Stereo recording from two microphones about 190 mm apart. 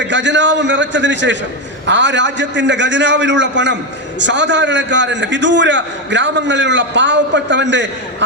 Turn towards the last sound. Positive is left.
turn(degrees=-70)  # may be behind; listen again after turning